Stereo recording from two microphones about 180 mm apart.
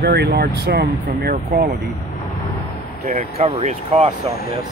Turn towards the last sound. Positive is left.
turn(degrees=-35)  # may be behind; listen again after turning